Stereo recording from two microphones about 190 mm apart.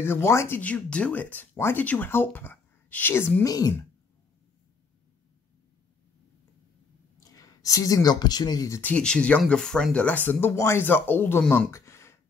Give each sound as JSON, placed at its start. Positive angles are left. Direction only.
{"t": 0.0, "sound": "speech", "side_deg": 15}
{"t": 7.2, "sound": "speech", "side_deg": 20}